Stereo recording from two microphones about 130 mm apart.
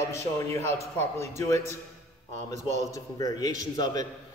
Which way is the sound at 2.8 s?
25° left (ahead or behind).